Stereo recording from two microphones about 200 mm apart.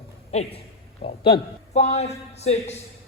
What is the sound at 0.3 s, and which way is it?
A man's voice, 35° left (ahead or behind).